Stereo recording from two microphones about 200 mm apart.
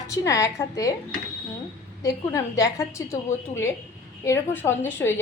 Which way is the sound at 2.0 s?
15° left (ahead or behind).